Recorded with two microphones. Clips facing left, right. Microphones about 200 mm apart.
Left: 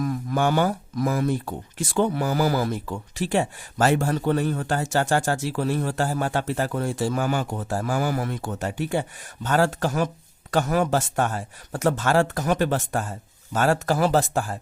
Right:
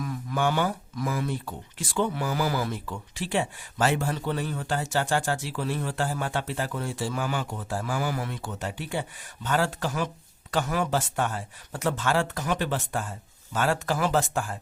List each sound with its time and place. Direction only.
0.0 s speech: 45° left (ahead or behind)